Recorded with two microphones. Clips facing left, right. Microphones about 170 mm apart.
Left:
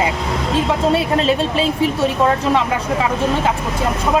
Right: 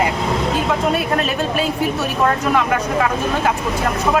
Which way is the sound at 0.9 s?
25° left (ahead or behind).